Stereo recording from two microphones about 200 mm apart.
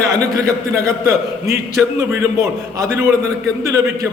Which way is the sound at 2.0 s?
15° right (ahead or behind).